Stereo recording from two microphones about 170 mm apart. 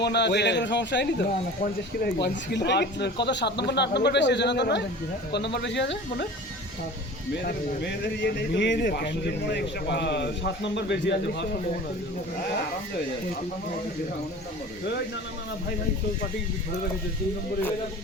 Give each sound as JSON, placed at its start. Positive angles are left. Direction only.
{"t": 0.0, "sound": "speech", "side_deg": 90}
{"t": 2.2, "sound": "a man's voice", "side_deg": 85}
{"t": 7.4, "sound": "speech", "side_deg": 85}